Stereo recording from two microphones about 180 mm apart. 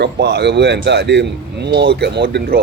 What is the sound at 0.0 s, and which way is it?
Speech, 70° right (ahead or behind).